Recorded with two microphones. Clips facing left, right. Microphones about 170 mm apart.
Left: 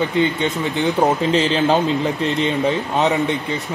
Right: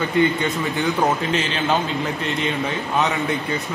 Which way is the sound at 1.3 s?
35° left (ahead or behind).